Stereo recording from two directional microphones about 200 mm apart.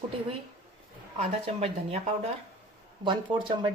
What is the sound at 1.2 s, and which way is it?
Speech, 30° right (ahead or behind).